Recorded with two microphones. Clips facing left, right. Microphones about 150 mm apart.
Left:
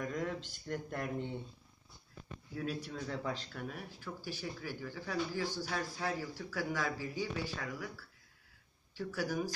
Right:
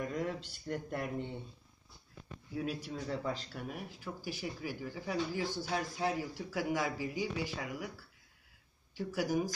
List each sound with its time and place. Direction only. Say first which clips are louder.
0.0 s a sound: right 1 dB; 5° right (ahead or behind)
0.7 s speech: right 2 dB; 5° right (ahead or behind)
2.5 s speech: right 2 dB; 5° right (ahead or behind)